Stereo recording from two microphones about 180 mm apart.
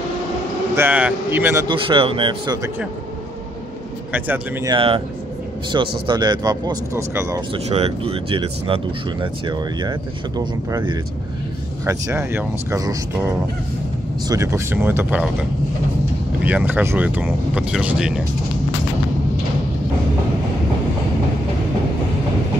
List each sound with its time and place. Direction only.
0.7 s speech: 10° right (ahead or behind)
1.7 s speech: 30° right (ahead or behind)
4.1 s speech: 10° right (ahead or behind)
4.6 s speech: 30° right (ahead or behind)
7.5 s speech: 35° right (ahead or behind); by 12.9 s 15° right (ahead or behind)
14.2 s speech: 20° right (ahead or behind)
16.4 s speech: 10° right (ahead or behind)